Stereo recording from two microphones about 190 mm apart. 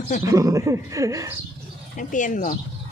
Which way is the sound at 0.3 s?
15° right (ahead or behind).